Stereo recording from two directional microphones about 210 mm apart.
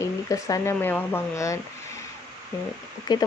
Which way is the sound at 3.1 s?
20° left (ahead or behind).